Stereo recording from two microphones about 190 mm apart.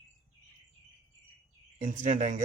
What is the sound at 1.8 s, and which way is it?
Speech, 40° right (ahead or behind).